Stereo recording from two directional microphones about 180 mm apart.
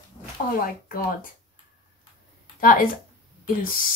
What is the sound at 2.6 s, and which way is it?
Speech, 50° left (ahead or behind).